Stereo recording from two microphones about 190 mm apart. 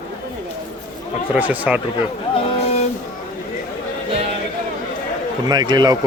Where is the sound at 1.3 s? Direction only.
10° right (ahead or behind).